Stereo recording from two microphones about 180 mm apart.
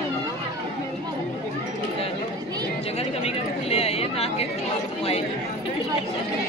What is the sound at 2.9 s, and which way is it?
Chatter, 35° left (ahead or behind).